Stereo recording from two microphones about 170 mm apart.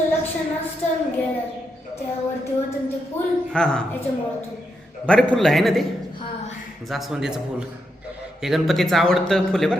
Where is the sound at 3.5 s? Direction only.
5° left (ahead or behind).